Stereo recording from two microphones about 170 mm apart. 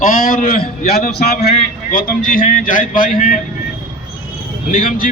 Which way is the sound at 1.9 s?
55° left (ahead or behind).